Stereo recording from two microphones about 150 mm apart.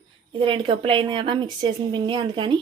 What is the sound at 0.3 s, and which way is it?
A woman's voice, 35° right (ahead or behind).